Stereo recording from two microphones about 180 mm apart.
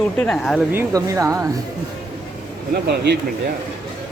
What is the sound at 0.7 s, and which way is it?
Speech, 15° right (ahead or behind).